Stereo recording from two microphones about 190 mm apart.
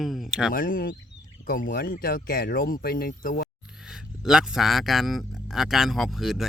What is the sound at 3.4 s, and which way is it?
Speech, centre (ahead or behind).